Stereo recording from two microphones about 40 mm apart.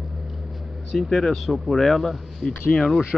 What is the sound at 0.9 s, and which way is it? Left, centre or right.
Speech, centre.